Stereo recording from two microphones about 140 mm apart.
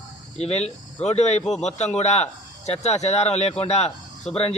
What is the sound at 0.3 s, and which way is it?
A man's voice, 50° left (ahead or behind).